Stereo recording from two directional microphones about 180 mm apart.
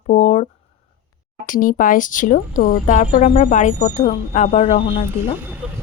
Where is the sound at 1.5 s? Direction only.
50° left (ahead or behind).